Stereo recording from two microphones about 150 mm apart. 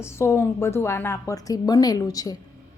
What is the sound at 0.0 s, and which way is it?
A woman's voice, 15° left (ahead or behind).